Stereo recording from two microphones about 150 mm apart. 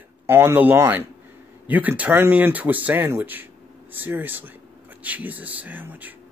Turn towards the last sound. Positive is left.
turn(degrees=-10)  # may be behind; listen again after turning